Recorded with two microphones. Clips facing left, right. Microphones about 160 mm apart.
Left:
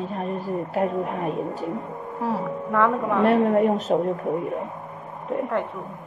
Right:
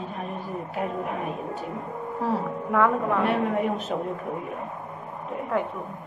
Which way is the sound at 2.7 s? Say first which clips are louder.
Even; centre (ahead or behind).